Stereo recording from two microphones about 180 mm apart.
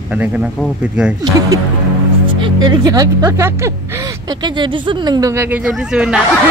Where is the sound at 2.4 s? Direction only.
25° right (ahead or behind); by 6.2 s 5° right (ahead or behind).